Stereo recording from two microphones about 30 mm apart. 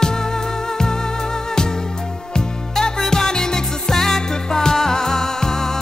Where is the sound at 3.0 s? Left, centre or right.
Centre.